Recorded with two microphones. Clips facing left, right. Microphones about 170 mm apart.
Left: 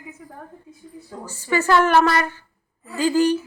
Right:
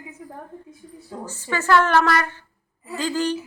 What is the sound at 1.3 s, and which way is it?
A woman's voice, 10° left (ahead or behind).